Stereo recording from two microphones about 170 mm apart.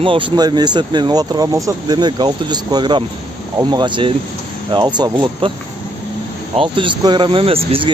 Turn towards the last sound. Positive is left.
turn(degrees=-35)  # may be behind; listen again after turning